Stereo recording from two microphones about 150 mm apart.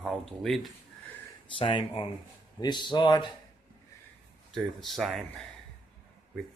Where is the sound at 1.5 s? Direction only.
35° left (ahead or behind).